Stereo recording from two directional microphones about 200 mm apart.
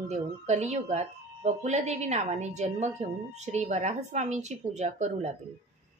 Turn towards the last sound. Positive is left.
turn(degrees=-35)  # may be behind; listen again after turning